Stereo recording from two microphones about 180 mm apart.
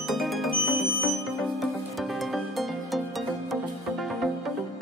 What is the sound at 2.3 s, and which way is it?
Music, centre (ahead or behind).